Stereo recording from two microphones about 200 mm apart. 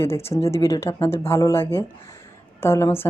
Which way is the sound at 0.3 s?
15° left (ahead or behind).